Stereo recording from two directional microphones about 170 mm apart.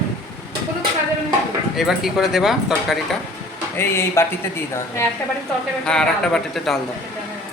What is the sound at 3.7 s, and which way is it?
Speech, 15° left (ahead or behind).